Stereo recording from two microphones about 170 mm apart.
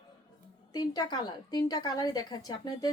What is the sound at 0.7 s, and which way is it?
A woman's voice, 25° left (ahead or behind).